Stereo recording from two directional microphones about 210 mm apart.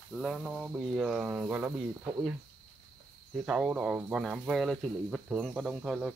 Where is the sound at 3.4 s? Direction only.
5° right (ahead or behind).